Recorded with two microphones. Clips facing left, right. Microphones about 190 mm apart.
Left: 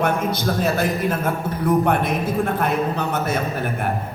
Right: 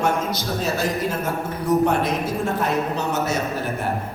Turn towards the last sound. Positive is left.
turn(degrees=55)  # may be behind; listen again after turning